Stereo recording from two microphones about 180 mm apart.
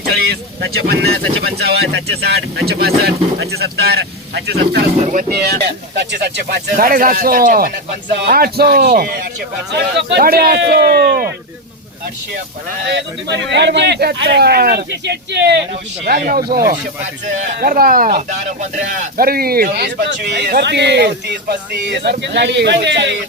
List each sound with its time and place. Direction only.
0.0 s speech: 60° right (ahead or behind)
9.7 s speech: 70° right (ahead or behind)
12.9 s speech: 75° right (ahead or behind)
16.0 s speech: 55° right (ahead or behind); by 23.1 s 75° right (ahead or behind)